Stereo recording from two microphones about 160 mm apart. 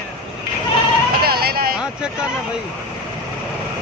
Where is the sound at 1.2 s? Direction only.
75° right (ahead or behind).